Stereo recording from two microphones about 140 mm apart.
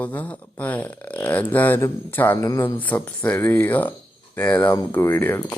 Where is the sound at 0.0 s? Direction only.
10° left (ahead or behind).